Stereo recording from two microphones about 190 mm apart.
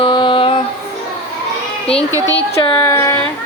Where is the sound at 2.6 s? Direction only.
15° left (ahead or behind).